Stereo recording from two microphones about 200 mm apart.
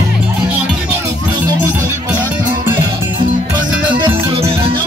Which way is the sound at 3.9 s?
25° right (ahead or behind).